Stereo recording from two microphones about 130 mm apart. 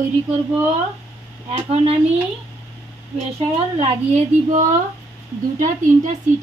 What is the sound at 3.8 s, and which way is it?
Speech, 70° right (ahead or behind).